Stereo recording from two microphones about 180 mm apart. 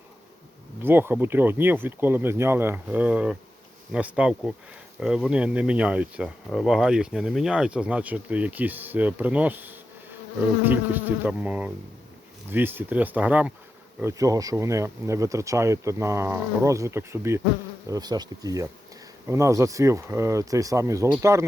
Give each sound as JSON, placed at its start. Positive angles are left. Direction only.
{"t": 0.8, "sound": "speech", "side_deg": -10}
{"t": 3.9, "sound": "bee", "side_deg": -5}
{"t": 4.9, "sound": "speech", "side_deg": -5}
{"t": 17.8, "sound": "bee", "side_deg": -20}
{"t": 19.3, "sound": "speech", "side_deg": -15}